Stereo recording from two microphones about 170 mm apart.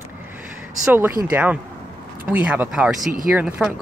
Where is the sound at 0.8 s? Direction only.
10° right (ahead or behind).